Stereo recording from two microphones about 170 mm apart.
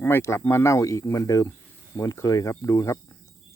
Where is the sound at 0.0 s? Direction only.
15° left (ahead or behind).